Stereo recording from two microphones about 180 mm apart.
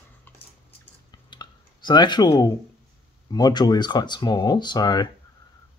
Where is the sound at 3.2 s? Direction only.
20° left (ahead or behind).